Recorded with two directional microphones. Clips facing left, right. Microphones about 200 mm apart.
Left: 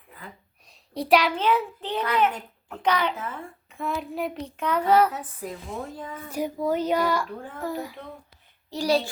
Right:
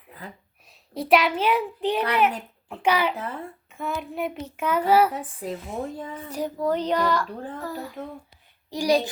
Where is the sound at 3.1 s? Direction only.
40° right (ahead or behind).